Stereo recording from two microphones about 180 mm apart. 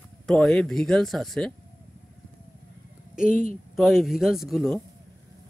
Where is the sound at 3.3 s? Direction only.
50° left (ahead or behind).